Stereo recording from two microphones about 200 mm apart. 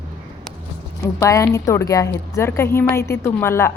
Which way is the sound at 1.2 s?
15° left (ahead or behind).